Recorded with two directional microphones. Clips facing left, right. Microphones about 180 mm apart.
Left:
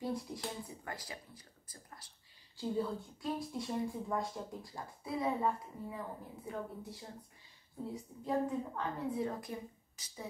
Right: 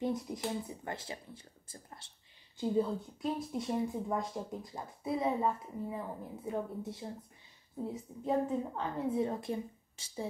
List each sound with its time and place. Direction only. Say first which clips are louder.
0.0 s speech: right 4 dB; 20° right (ahead or behind)